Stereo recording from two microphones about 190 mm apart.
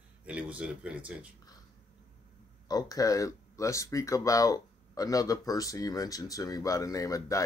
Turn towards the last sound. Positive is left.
turn(degrees=15)  # may be behind; listen again after turning